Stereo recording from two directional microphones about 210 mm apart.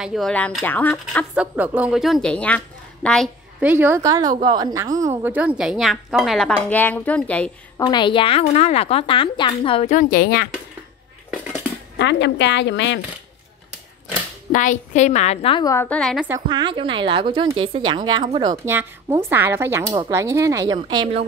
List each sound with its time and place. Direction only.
0.0 s speech: centre (ahead or behind)
1.3 s a woman's voice: 5° right (ahead or behind)
3.6 s a woman's voice: 10° right (ahead or behind); by 7.8 s 5° left (ahead or behind)
7.8 s a woman's voice: 20° left (ahead or behind); by 10.5 s 45° left (ahead or behind)
12.0 s a woman's voice: 55° left (ahead or behind)
14.5 s a woman's voice: 35° left (ahead or behind); by 16.3 s 5° left (ahead or behind)
16.4 s speech: 20° right (ahead or behind)